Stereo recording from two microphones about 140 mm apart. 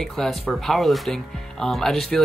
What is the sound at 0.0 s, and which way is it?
Speech, 5° left (ahead or behind).